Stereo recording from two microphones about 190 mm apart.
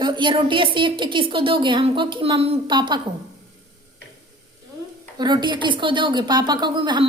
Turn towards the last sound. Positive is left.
turn(degrees=-25)  # may be behind; listen again after turning